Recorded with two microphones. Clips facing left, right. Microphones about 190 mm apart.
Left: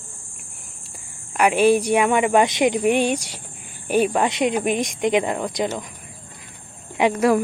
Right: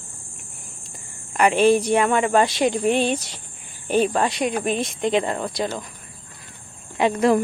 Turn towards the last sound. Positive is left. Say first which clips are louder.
# left 1 dB
turn(degrees=15)  # may be behind; listen again after turning